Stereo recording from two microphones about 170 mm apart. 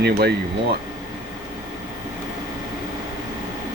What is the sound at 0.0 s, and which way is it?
Speech, 70° right (ahead or behind).